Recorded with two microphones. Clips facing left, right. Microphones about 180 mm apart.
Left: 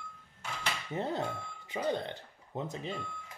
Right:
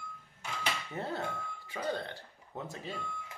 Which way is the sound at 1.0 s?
20° left (ahead or behind).